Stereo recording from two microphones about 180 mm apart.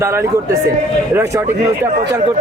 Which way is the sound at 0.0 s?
15° right (ahead or behind).